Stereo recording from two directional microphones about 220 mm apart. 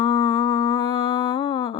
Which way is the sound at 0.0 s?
25° left (ahead or behind).